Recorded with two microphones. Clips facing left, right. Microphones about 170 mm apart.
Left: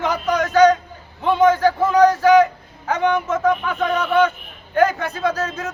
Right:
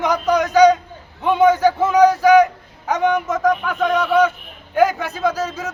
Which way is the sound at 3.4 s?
Centre (ahead or behind).